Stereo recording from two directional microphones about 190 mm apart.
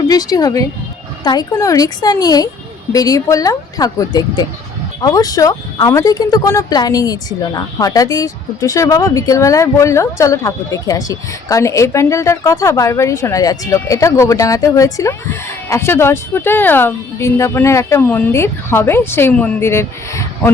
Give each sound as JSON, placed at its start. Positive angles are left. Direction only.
{"t": 0.1, "sound": "speech", "side_deg": 20}